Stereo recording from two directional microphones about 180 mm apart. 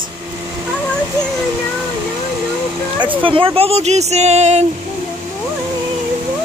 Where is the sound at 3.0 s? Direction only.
30° right (ahead or behind).